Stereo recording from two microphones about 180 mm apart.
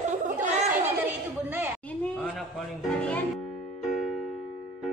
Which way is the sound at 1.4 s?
10° right (ahead or behind).